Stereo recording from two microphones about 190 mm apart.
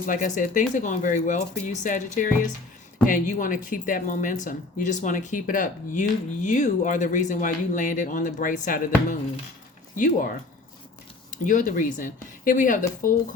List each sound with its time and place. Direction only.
0.0 s speech: 45° left (ahead or behind)
9.9 s speech: 45° left (ahead or behind)